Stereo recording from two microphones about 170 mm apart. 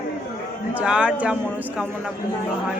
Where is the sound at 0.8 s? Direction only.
5° right (ahead or behind).